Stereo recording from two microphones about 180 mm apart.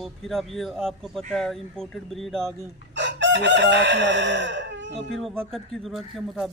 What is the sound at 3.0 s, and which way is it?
Chicken, 85° right.